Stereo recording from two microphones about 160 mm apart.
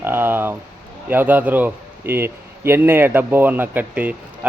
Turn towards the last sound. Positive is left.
turn(degrees=-10)  # may be behind; listen again after turning